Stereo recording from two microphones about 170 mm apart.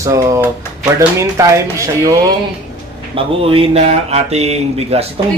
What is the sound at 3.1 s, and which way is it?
Speech, 35° right (ahead or behind).